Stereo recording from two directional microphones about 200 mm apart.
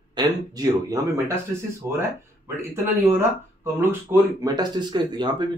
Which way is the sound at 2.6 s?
10° right (ahead or behind).